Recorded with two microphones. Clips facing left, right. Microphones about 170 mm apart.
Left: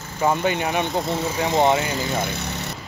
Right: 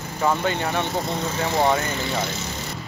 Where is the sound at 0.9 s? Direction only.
Centre (ahead or behind).